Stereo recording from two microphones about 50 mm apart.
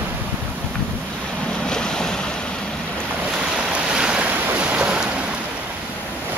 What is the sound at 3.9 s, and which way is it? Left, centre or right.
Waves, centre.